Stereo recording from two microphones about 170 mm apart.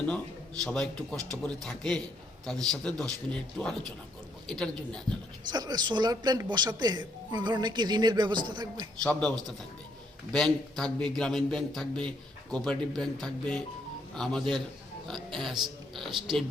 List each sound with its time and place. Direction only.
0.6 s a man's voice: 5° left (ahead or behind)
5.5 s speech: 25° right (ahead or behind)
9.0 s a man's voice: 5° left (ahead or behind)